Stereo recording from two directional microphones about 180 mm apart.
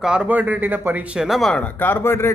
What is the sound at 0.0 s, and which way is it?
A man's voice, 5° right (ahead or behind).